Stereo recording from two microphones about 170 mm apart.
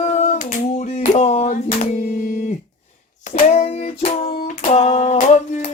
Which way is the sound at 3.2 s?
45° left (ahead or behind).